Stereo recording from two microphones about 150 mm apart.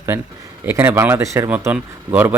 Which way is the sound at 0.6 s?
15° right (ahead or behind).